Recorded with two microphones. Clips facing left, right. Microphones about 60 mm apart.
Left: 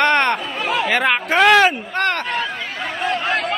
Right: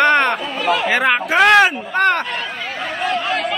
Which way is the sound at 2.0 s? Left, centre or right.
Right.